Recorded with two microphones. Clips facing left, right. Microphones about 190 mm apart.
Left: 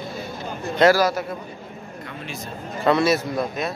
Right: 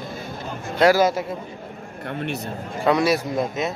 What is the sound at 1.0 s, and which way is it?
Speech, 25° right (ahead or behind).